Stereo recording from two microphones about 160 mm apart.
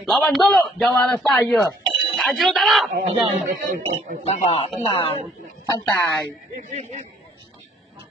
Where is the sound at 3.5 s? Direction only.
60° right (ahead or behind).